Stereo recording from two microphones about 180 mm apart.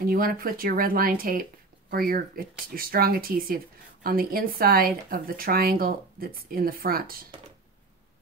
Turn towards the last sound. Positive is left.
turn(degrees=-55)  # may be behind; listen again after turning